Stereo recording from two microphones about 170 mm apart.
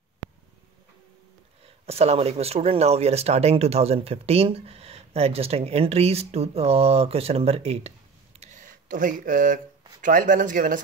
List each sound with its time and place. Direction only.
1.9 s speech: 35° right (ahead or behind)
8.4 s a sound: 45° right (ahead or behind)
9.2 s speech: 50° right (ahead or behind)